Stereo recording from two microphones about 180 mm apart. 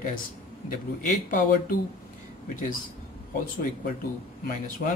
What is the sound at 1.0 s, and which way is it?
Speech, 50° left (ahead or behind).